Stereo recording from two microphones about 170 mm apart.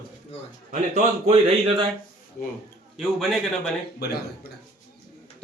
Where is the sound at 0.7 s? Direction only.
40° right (ahead or behind).